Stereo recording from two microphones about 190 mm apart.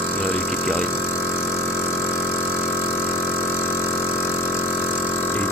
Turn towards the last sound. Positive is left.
turn(degrees=10)  # may be behind; listen again after turning